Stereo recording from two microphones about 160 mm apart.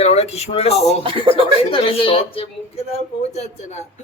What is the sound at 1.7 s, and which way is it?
A woman's voice, 35° left (ahead or behind).